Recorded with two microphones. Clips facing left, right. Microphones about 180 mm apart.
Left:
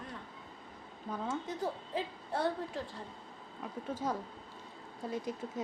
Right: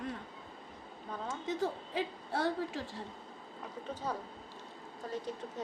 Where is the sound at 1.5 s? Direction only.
90° right.